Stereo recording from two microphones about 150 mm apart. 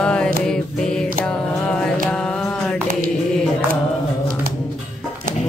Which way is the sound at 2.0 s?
5° left (ahead or behind).